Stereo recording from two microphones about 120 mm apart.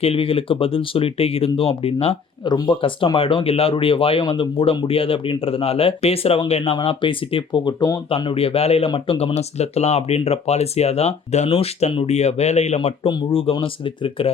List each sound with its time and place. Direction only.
0.0 s speech: 50° left (ahead or behind)
2.5 s speech: 40° left (ahead or behind); by 6.4 s 55° left (ahead or behind)
6.7 s speech: 45° left (ahead or behind)
12.0 s speech: 65° left (ahead or behind)
13.1 s speech: 50° left (ahead or behind)